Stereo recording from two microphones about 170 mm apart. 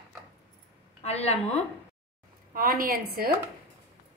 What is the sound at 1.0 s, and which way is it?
Speech, 40° left (ahead or behind).